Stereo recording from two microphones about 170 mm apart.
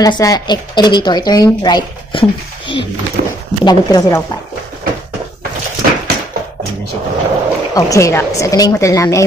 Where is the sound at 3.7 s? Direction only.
20° left (ahead or behind).